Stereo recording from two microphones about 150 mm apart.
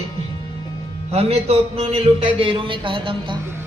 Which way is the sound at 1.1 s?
45° right (ahead or behind).